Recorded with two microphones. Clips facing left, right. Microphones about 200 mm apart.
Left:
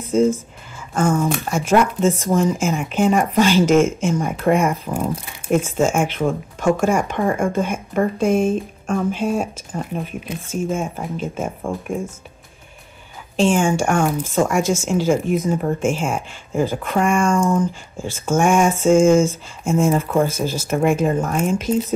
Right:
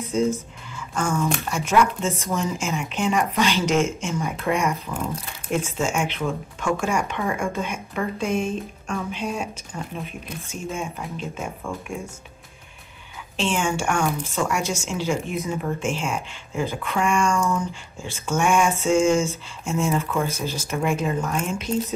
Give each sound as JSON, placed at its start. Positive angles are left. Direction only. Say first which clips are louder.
{"t": 0.1, "sound": "speech", "louder": "left 6 dB", "side_deg": 45}
{"t": 13.4, "sound": "speech", "louder": "left 7 dB", "side_deg": 50}
{"t": 21.7, "sound": "speech", "louder": "left 3 dB", "side_deg": 20}